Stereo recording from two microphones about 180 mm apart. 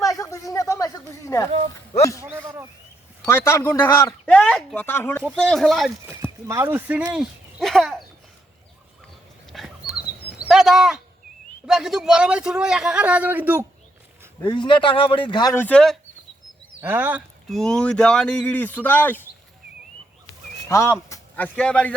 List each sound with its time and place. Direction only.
0.0 s a sound: 20° left (ahead or behind)
1.9 s speech: 20° left (ahead or behind)
3.2 s a man's voice: 15° left (ahead or behind)
5.4 s a man's voice: centre (ahead or behind)
6.1 s speech: 15° right (ahead or behind)
7.6 s a man's voice: centre (ahead or behind)
9.5 s dog: centre (ahead or behind)
11.6 s a man's voice: 5° right (ahead or behind)
14.4 s speech: 25° left (ahead or behind)
15.6 s a man's voice: 5° left (ahead or behind)
16.8 s speech: 10° right (ahead or behind)
17.6 s a man's voice: 5° left (ahead or behind)
20.7 s speech: 15° left (ahead or behind)